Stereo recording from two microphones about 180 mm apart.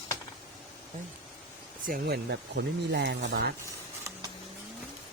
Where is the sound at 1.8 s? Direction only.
50° right (ahead or behind).